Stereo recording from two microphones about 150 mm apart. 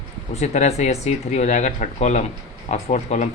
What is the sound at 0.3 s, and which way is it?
Speech, 50° left (ahead or behind).